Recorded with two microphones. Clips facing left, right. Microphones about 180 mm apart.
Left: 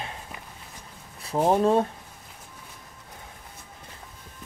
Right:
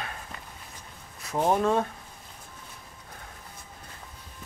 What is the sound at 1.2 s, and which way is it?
Speech, 30° left (ahead or behind).